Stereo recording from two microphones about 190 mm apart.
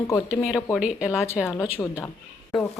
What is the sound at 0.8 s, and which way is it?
Speech, 5° right (ahead or behind).